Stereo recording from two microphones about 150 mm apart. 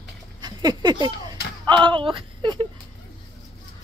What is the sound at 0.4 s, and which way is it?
Speech, 30° right (ahead or behind).